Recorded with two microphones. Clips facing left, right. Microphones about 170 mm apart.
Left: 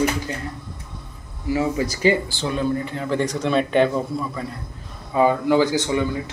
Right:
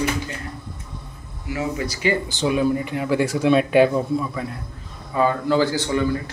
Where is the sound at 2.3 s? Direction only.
15° right (ahead or behind).